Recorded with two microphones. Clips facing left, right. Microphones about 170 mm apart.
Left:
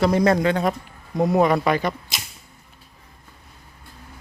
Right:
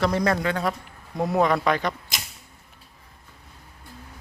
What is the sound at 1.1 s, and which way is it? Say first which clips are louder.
Speech: left 4 dB; centre (ahead or behind).